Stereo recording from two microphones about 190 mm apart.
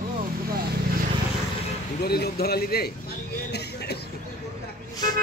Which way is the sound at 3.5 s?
60° left (ahead or behind).